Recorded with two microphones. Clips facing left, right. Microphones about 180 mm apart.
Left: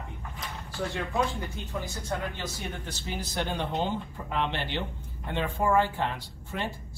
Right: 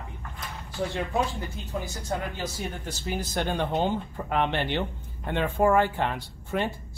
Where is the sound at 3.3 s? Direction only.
55° right (ahead or behind).